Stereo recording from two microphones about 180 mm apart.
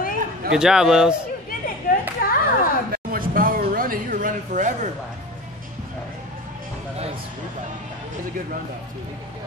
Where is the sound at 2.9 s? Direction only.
55° right (ahead or behind).